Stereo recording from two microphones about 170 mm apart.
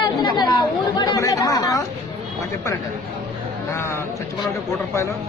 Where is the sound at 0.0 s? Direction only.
25° left (ahead or behind).